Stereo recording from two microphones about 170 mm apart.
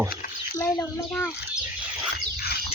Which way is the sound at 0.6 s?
15° left (ahead or behind).